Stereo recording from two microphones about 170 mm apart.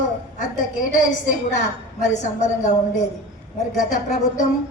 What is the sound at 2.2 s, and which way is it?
Speech, 45° left (ahead or behind).